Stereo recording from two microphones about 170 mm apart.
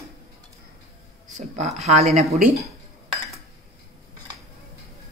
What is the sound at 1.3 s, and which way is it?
Speech, 40° right (ahead or behind).